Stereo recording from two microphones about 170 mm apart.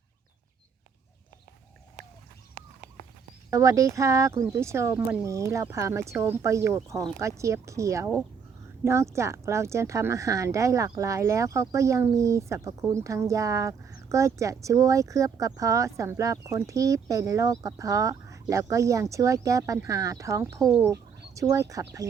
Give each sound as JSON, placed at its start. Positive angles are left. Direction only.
{"t": 3.5, "sound": "speech", "side_deg": -20}
{"t": 20.8, "sound": "a sound", "side_deg": -20}
{"t": 21.5, "sound": "speech", "side_deg": -20}